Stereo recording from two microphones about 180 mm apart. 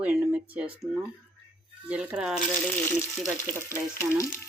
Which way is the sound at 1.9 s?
5° right (ahead or behind).